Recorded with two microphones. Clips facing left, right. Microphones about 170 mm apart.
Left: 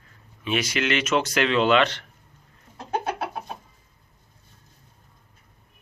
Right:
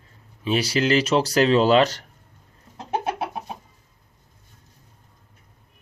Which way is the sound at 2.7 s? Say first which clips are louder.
Right 2 dB; 20° right (ahead or behind).